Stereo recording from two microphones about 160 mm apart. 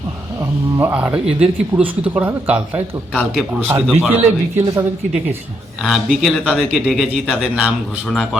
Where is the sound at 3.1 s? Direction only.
10° left (ahead or behind).